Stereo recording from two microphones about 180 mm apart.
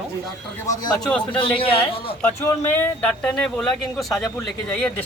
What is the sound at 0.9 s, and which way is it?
Speech, 5° left (ahead or behind).